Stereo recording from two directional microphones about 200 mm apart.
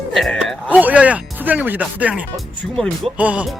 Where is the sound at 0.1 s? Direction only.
Centre (ahead or behind).